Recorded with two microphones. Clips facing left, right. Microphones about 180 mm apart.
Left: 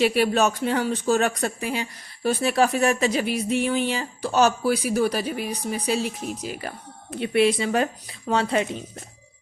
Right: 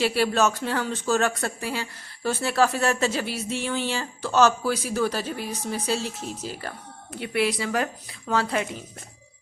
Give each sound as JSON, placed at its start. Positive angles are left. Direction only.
{"t": 0.0, "sound": "speech", "side_deg": 15}